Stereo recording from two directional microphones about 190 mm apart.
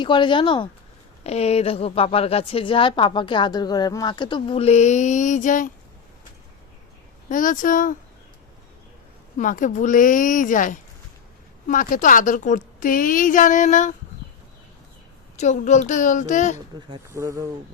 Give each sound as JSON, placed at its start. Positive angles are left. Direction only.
{"t": 0.0, "sound": "a woman's voice", "side_deg": 25}
{"t": 7.3, "sound": "a woman's voice", "side_deg": 45}
{"t": 9.4, "sound": "a woman's voice", "side_deg": 45}
{"t": 15.4, "sound": "a woman's voice", "side_deg": 40}
{"t": 17.1, "sound": "speech", "side_deg": -15}